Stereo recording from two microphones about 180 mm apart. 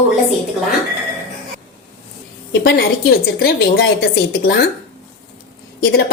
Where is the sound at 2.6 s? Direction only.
55° left (ahead or behind).